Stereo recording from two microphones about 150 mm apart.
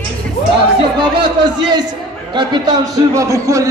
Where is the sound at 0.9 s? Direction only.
30° right (ahead or behind).